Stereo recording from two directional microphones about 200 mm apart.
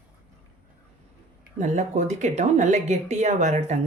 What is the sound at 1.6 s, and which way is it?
Speech, 35° right (ahead or behind).